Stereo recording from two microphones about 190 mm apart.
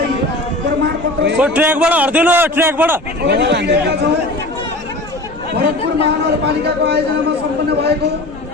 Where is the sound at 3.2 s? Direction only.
60° right (ahead or behind).